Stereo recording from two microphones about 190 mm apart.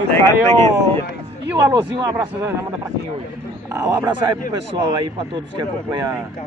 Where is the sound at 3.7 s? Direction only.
15° right (ahead or behind).